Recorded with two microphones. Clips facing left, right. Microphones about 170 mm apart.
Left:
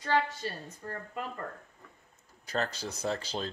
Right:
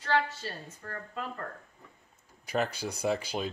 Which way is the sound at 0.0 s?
15° left (ahead or behind).